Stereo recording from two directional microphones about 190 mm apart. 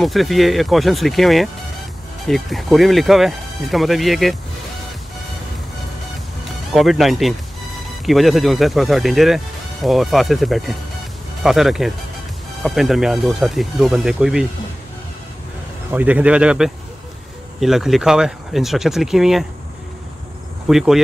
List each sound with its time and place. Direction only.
0.0 s speech: centre (ahead or behind)
6.7 s speech: centre (ahead or behind)
15.9 s speech: 10° right (ahead or behind)
20.6 s speech: centre (ahead or behind)